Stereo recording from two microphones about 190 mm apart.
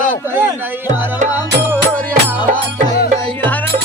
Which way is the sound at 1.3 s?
10° right (ahead or behind).